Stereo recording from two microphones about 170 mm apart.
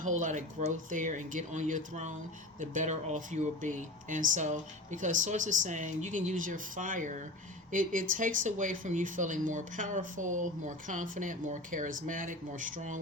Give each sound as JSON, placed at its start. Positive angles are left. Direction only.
{"t": 0.0, "sound": "speech", "side_deg": -45}